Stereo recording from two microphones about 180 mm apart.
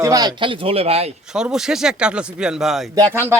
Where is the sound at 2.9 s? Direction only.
15° right (ahead or behind).